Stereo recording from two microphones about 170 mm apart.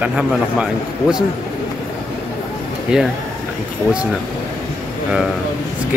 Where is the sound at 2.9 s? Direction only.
5° right (ahead or behind).